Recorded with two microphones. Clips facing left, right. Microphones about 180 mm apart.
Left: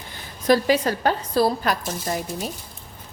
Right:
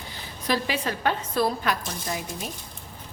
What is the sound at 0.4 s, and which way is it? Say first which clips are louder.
A woman's voice: left 8 dB; 40° left (ahead or behind).